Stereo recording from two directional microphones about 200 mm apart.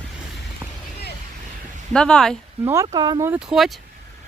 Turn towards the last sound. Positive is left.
turn(degrees=0)  # may be behind; listen again after turning